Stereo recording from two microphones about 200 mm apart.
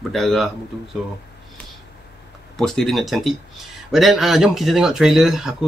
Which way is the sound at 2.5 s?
Centre (ahead or behind).